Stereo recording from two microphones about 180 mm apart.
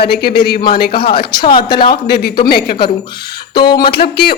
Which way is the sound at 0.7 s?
60° left (ahead or behind).